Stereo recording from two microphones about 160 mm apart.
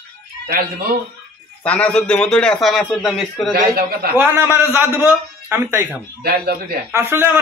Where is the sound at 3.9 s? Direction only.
75° right (ahead or behind).